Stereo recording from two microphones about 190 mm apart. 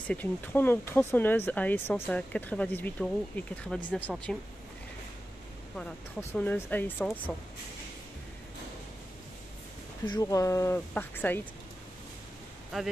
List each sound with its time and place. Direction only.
0.1 s speech: 10° left (ahead or behind)
5.8 s speech: 5° left (ahead or behind)
10.0 s speech: 20° left (ahead or behind)